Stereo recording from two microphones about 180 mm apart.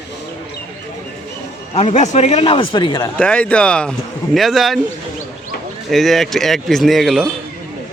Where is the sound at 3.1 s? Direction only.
5° left (ahead or behind).